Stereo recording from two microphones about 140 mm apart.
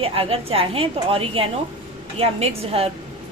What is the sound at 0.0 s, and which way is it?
A woman's voice, 40° right (ahead or behind).